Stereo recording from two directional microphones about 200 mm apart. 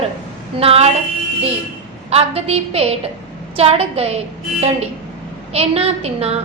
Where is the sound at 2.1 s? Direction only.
30° right (ahead or behind).